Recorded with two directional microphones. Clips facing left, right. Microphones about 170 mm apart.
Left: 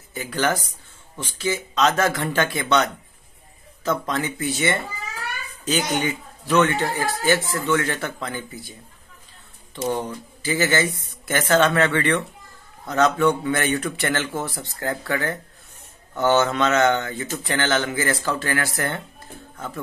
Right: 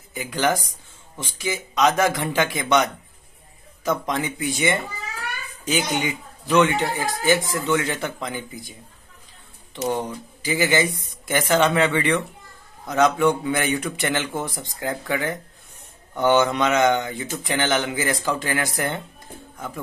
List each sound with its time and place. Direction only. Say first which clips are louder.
0.1 s speech: right 1 dB; 15° right (ahead or behind)
9.8 s speech: even; 15° right (ahead or behind)
19.5 s music: even; 15° right (ahead or behind)